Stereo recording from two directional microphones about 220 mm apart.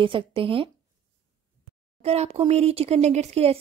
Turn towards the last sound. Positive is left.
turn(degrees=-30)  # may be behind; listen again after turning